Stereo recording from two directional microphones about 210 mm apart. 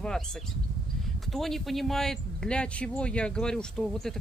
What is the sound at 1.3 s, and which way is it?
Speech, centre (ahead or behind).